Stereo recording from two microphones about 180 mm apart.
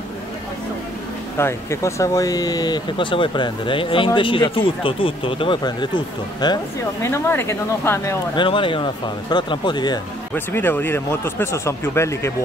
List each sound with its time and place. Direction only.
1.4 s speech: 15° left (ahead or behind)
8.4 s speech: 30° left (ahead or behind)
10.3 s speech: 10° left (ahead or behind)